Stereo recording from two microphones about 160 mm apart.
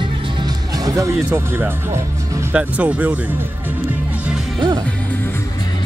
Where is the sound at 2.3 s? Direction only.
10° right (ahead or behind).